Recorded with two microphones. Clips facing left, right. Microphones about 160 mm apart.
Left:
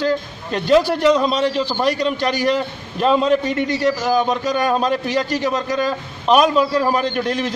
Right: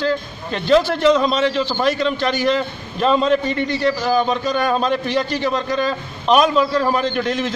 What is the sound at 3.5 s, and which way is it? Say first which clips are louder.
Speech: left 1 dB; 45° left (ahead or behind).